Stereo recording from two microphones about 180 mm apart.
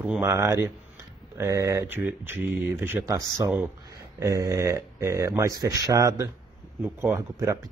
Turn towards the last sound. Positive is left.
turn(degrees=-20)  # may be behind; listen again after turning